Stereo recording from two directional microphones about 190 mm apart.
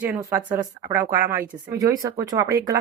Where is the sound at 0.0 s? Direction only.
15° right (ahead or behind).